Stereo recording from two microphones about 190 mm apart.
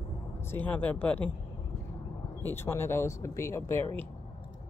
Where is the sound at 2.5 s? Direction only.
10° left (ahead or behind).